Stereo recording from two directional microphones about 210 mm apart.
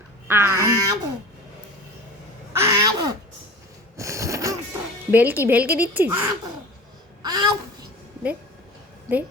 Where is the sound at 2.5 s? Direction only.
15° right (ahead or behind).